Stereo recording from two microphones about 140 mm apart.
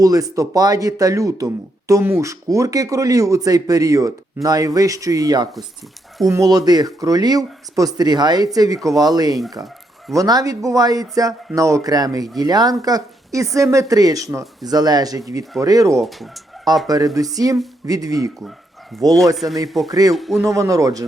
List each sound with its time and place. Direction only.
0.0 s speech: 25° right (ahead or behind)
16.0 s fowl: centre (ahead or behind)
16.8 s speech: 25° right (ahead or behind)
18.9 s fowl: centre (ahead or behind)
19.9 s speech: 25° right (ahead or behind)
20.1 s fowl: centre (ahead or behind)
20.4 s speech: 20° right (ahead or behind)